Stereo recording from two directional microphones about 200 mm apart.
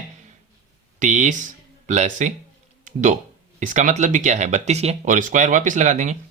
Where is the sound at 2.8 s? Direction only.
40° right (ahead or behind).